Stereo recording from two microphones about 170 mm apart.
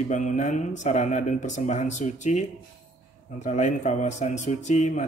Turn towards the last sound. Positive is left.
turn(degrees=45)  # may be behind; listen again after turning